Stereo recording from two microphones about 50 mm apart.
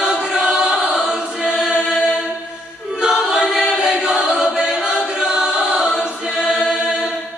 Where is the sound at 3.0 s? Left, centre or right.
Centre.